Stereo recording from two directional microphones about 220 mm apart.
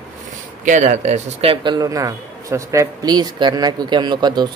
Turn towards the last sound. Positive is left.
turn(degrees=-20)  # may be behind; listen again after turning